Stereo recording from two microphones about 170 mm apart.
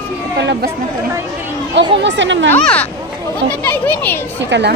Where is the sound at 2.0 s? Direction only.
90° right.